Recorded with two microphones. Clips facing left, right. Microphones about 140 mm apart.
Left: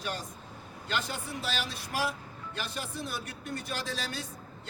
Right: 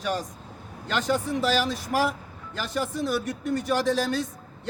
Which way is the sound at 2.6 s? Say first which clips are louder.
Right 10 dB; 90° right.